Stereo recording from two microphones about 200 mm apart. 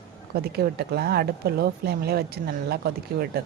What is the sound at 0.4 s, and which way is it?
Speech, 50° right (ahead or behind).